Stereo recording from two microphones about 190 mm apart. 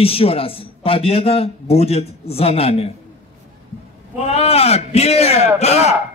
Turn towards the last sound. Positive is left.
turn(degrees=35)  # may be behind; listen again after turning